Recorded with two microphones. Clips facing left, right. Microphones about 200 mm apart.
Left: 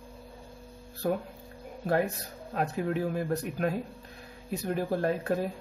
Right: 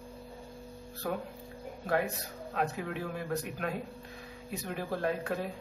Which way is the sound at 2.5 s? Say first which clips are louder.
Left 4 dB; 40° left (ahead or behind).